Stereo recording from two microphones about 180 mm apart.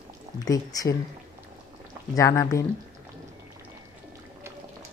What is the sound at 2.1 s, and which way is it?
Speech, 15° left (ahead or behind).